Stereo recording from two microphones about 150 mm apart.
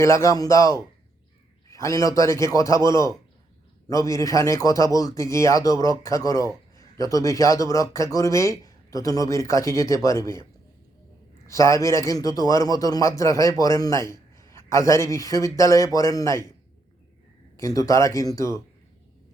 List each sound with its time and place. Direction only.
0.0 s speech: 20° left (ahead or behind)
11.4 s speech: 20° left (ahead or behind)
17.6 s speech: 20° left (ahead or behind)